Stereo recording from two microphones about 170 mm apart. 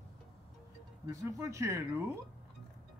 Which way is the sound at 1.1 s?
20° right (ahead or behind).